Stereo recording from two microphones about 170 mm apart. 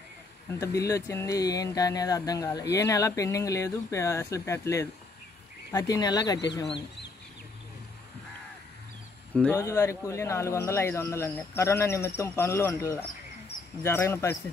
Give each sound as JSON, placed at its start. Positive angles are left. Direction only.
{"t": 0.5, "sound": "speech", "side_deg": 20}
{"t": 9.3, "sound": "speech", "side_deg": 5}